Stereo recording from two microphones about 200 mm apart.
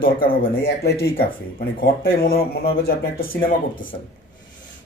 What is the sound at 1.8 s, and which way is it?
A man's voice, 50° left (ahead or behind).